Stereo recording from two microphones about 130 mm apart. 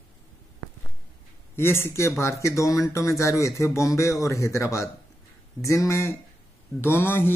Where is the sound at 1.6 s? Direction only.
20° left (ahead or behind).